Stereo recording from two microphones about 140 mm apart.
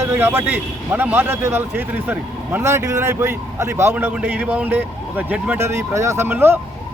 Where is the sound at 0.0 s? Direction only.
15° right (ahead or behind).